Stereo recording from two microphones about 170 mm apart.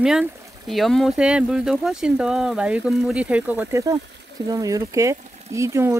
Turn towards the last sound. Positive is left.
turn(degrees=-15)  # may be behind; listen again after turning